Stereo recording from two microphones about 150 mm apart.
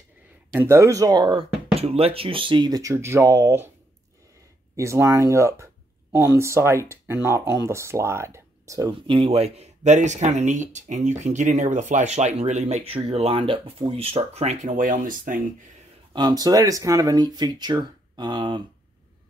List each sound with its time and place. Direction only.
0.6 s speech: 15° right (ahead or behind)
1.8 s speech: 40° right (ahead or behind); by 3.7 s 15° right (ahead or behind)
4.7 s speech: 20° right (ahead or behind)
9.0 s speech: 35° right (ahead or behind); by 15.4 s 65° right (ahead or behind)
16.1 s speech: 30° right (ahead or behind)